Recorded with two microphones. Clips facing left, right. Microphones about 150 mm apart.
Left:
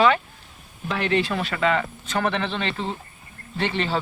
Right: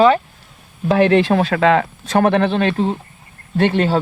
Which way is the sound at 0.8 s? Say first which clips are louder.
Right 10 dB; 50° right (ahead or behind).